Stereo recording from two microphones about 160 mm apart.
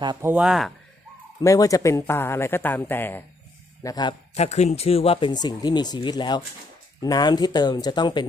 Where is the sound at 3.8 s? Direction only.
25° left (ahead or behind).